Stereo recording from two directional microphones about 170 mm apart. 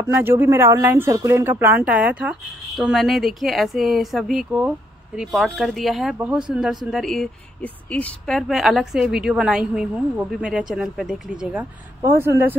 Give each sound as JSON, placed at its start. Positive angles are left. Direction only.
{"t": 0.0, "sound": "a woman's voice", "side_deg": -15}
{"t": 12.0, "sound": "speech", "side_deg": -15}